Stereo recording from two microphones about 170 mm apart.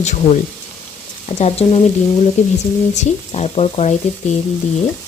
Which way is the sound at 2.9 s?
40° left (ahead or behind).